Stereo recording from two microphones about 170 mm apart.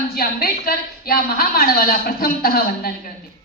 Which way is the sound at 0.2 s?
60° left (ahead or behind).